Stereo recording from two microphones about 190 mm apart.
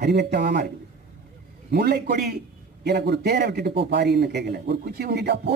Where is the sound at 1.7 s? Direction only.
60° right (ahead or behind).